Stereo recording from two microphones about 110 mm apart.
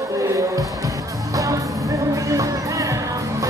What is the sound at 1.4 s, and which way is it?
Music, 30° right (ahead or behind).